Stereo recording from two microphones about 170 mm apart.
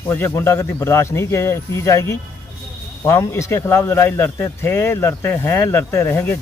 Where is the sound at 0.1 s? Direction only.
15° left (ahead or behind).